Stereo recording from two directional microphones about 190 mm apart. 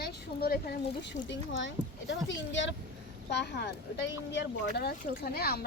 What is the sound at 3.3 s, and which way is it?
Speech, 60° left (ahead or behind).